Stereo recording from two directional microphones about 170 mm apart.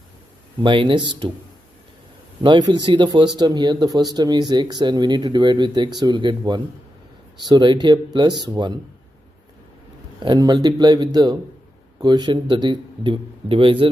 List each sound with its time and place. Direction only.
0.6 s speech: 30° right (ahead or behind)
2.4 s speech: 25° right (ahead or behind)
10.2 s speech: 25° right (ahead or behind)